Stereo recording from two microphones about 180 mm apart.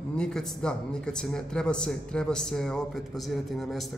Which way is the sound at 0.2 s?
5° left (ahead or behind).